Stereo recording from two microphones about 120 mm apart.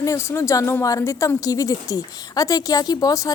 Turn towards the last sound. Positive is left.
turn(degrees=30)  # may be behind; listen again after turning